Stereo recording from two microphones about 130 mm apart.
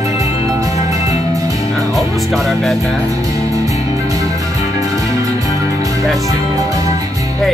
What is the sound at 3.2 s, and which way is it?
Music, 25° right (ahead or behind).